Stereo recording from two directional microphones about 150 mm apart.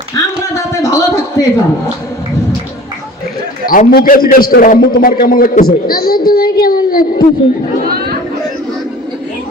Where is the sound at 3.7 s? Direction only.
70° left (ahead or behind).